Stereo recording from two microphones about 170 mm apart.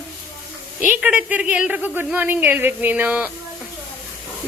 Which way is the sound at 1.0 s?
5° right (ahead or behind).